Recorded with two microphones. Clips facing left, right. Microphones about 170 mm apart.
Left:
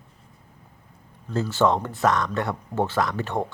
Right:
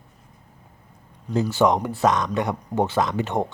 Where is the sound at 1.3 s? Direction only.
15° right (ahead or behind).